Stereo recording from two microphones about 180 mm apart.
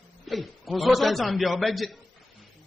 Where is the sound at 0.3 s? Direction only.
Centre (ahead or behind).